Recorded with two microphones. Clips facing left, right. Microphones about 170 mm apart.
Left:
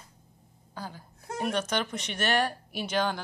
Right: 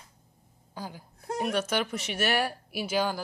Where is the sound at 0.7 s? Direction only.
10° right (ahead or behind).